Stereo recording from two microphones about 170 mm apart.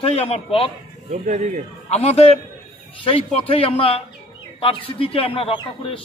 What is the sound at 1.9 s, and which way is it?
A man's voice, 35° left (ahead or behind).